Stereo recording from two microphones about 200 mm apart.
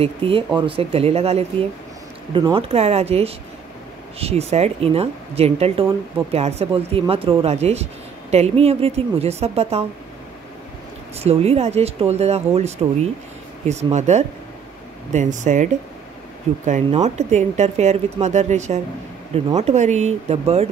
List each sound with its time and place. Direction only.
0.0 s speech: 25° right (ahead or behind)
11.1 s speech: 30° right (ahead or behind)